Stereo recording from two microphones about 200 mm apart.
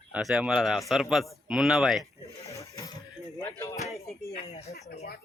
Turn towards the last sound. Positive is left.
turn(degrees=30)  # may be behind; listen again after turning